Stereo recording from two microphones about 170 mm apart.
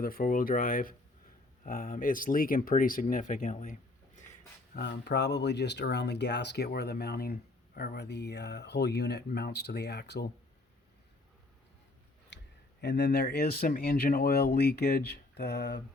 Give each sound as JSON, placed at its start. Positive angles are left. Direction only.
{"t": 0.0, "sound": "speech", "side_deg": 55}
{"t": 4.8, "sound": "speech", "side_deg": 85}
{"t": 12.8, "sound": "speech", "side_deg": 80}